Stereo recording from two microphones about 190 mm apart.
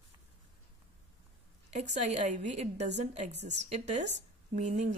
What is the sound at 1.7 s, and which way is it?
A woman's voice, 40° right (ahead or behind).